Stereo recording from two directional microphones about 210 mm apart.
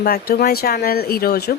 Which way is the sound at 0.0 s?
45° left (ahead or behind).